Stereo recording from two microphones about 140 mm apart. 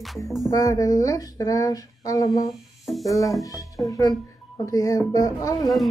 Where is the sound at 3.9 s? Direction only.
25° left (ahead or behind).